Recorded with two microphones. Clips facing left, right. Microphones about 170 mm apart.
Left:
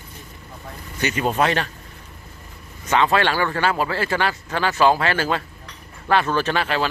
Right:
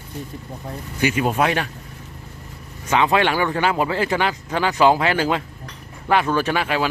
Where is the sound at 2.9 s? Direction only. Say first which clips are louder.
Right 1 dB; 15° right (ahead or behind).